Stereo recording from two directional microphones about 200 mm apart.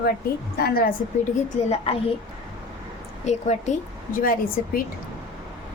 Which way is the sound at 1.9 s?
30° left (ahead or behind).